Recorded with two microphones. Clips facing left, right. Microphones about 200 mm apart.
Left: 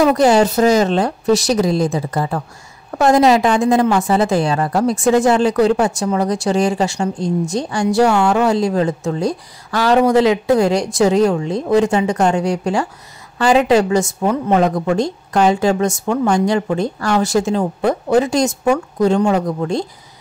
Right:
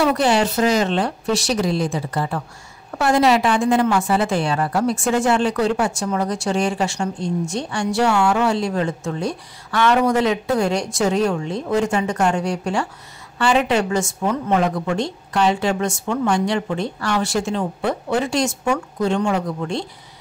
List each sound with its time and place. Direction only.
0.0 s a woman's voice: 40° left (ahead or behind)